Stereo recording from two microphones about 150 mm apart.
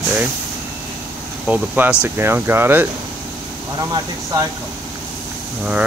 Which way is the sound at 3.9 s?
20° right (ahead or behind).